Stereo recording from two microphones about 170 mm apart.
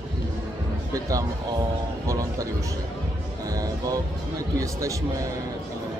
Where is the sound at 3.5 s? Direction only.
20° right (ahead or behind).